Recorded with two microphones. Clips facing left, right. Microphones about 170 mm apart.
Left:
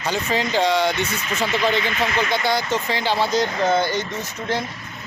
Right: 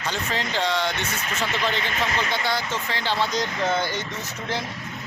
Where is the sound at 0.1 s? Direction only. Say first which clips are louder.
Left 6 dB; 10° left (ahead or behind).